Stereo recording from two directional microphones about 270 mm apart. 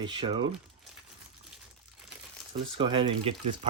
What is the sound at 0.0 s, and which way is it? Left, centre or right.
Speech, centre.